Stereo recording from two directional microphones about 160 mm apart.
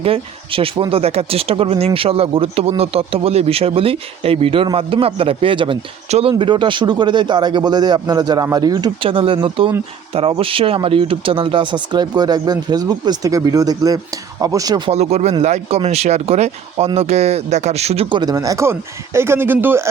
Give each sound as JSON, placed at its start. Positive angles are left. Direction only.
{"t": 0.0, "sound": "speech", "side_deg": -35}
{"t": 14.8, "sound": "speech", "side_deg": -40}